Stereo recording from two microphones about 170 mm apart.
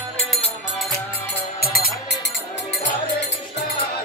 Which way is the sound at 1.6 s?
65° left (ahead or behind).